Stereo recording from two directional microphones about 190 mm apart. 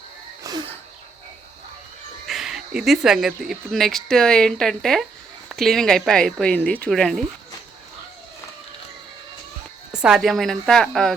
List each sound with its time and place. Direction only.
0.4 s a sound: 20° right (ahead or behind)
2.2 s speech: centre (ahead or behind)
9.9 s speech: 5° right (ahead or behind)